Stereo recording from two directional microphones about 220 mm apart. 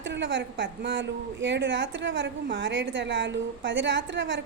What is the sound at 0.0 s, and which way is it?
A woman's voice, 55° right (ahead or behind).